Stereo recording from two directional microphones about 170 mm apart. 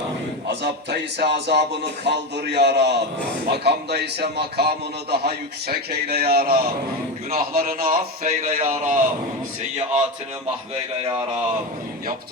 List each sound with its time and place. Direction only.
0.4 s a man's voice: 80° right; by 10.1 s 40° right (ahead or behind)